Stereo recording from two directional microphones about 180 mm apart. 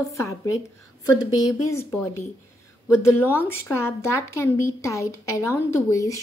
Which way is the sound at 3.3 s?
10° left (ahead or behind).